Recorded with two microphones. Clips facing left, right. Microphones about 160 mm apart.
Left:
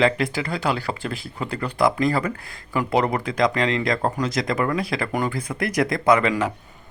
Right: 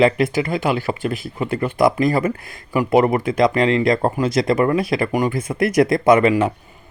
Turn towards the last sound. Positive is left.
turn(degrees=-20)  # may be behind; listen again after turning